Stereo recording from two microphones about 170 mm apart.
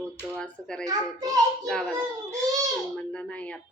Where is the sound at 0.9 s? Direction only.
20° right (ahead or behind).